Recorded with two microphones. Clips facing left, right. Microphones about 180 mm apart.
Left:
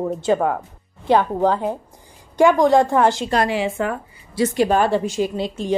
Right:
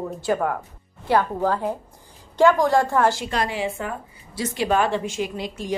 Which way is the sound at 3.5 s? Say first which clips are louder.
Left 5 dB; 80° left.